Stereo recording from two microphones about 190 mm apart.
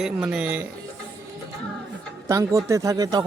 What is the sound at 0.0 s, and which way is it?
Speech, 5° right (ahead or behind).